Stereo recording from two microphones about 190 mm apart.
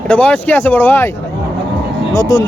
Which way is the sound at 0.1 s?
10° left (ahead or behind).